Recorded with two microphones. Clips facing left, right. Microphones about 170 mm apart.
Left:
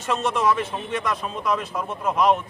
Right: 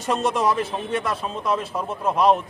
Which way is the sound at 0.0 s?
35° right (ahead or behind).